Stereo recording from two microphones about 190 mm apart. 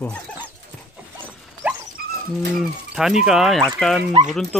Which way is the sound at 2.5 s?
Centre (ahead or behind).